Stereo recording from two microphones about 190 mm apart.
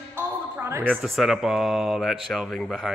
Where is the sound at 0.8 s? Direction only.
Centre (ahead or behind).